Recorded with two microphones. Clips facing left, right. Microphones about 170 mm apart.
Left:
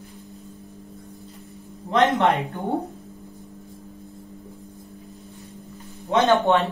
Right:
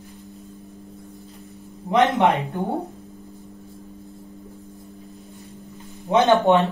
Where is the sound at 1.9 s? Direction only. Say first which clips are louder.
Right 1 dB; 20° right (ahead or behind).